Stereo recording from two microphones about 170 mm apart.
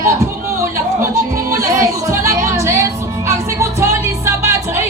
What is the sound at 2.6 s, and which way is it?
Music, 15° right (ahead or behind).